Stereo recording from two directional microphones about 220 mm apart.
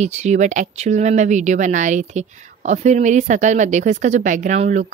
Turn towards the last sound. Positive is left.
turn(degrees=-35)  # may be behind; listen again after turning